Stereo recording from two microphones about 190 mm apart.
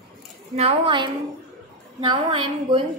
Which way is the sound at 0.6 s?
30° right (ahead or behind).